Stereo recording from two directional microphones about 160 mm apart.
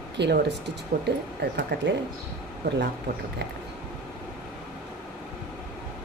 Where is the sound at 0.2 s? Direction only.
90° right.